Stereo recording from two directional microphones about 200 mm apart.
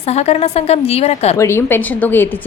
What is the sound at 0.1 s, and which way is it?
Speech, 30° left (ahead or behind).